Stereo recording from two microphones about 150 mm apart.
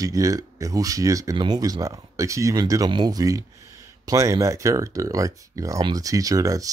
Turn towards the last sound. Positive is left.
turn(degrees=-25)  # may be behind; listen again after turning